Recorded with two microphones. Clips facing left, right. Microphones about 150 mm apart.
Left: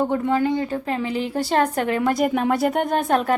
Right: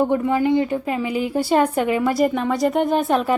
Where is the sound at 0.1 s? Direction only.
15° right (ahead or behind).